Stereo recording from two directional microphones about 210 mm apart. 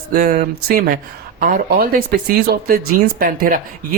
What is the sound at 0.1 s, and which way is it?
Speech, 45° right (ahead or behind).